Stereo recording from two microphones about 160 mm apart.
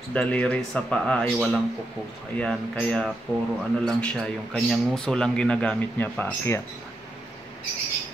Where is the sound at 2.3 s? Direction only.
5° left (ahead or behind).